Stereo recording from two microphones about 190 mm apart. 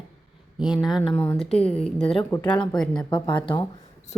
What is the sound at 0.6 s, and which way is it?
Speech, 5° right (ahead or behind).